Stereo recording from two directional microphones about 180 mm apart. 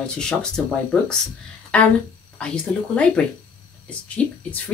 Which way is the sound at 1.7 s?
5° left (ahead or behind).